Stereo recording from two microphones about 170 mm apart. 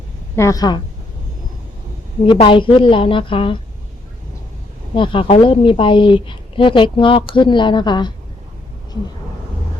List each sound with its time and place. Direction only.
0.3 s speech: 20° left (ahead or behind)
2.2 s speech: 30° left (ahead or behind)
4.9 s speech: 30° left (ahead or behind)